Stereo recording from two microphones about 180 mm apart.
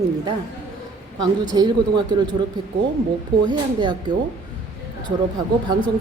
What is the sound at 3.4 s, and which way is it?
Speech, 25° right (ahead or behind).